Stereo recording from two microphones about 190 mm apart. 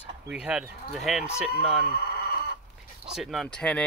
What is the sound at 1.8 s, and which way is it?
Speech, 55° left (ahead or behind).